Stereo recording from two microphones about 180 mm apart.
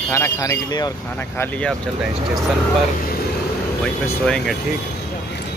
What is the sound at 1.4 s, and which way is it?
Speech, 5° left (ahead or behind).